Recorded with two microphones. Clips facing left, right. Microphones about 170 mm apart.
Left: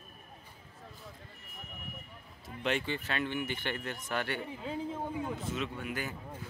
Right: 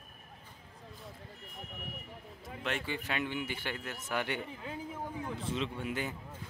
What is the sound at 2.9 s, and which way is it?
A man's voice, 15° right (ahead or behind).